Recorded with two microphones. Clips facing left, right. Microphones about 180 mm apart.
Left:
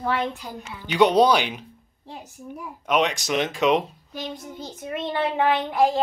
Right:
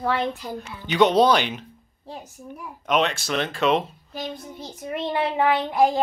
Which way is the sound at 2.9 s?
15° left (ahead or behind).